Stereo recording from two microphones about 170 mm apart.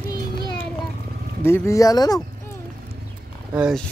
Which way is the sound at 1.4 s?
15° left (ahead or behind).